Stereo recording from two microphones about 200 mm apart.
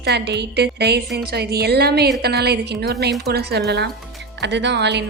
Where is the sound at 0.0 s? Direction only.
55° right (ahead or behind).